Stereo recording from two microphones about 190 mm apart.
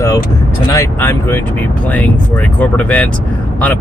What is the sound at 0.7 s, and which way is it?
Speech, 15° left (ahead or behind).